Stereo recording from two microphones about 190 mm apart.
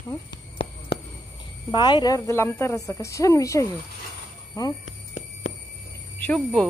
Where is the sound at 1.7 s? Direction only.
20° left (ahead or behind).